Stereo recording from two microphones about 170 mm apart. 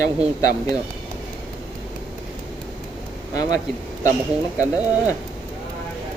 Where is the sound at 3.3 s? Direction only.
20° left (ahead or behind).